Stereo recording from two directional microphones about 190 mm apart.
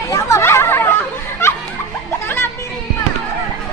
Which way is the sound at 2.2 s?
10° left (ahead or behind).